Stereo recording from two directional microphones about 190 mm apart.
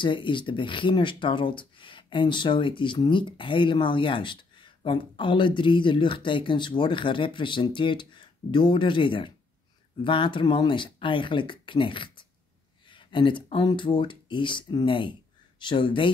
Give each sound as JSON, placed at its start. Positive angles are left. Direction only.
{"t": 0.0, "sound": "speech", "side_deg": 25}